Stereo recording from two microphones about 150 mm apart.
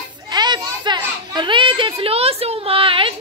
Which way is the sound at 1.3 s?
30° right (ahead or behind).